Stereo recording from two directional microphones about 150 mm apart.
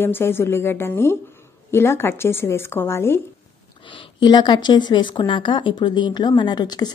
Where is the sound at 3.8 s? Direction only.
30° left (ahead or behind).